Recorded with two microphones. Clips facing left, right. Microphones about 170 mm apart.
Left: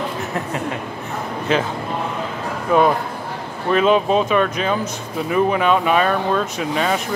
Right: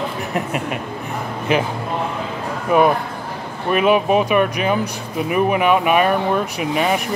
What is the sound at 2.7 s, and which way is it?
Speech, 15° right (ahead or behind).